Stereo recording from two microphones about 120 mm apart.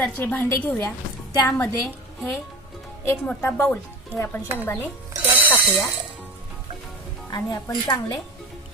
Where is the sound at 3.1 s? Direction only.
20° left (ahead or behind).